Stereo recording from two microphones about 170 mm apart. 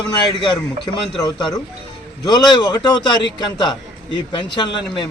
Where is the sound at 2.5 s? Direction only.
25° left (ahead or behind).